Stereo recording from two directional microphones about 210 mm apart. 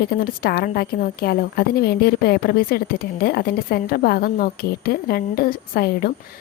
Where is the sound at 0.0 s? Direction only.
45° left (ahead or behind).